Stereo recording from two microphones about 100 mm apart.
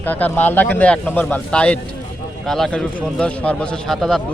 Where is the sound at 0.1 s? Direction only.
20° left (ahead or behind).